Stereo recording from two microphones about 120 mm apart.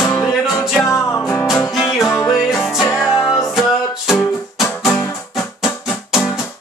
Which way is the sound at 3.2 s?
25° left (ahead or behind).